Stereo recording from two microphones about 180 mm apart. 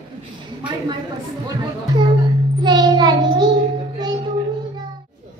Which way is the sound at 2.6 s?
25° right (ahead or behind).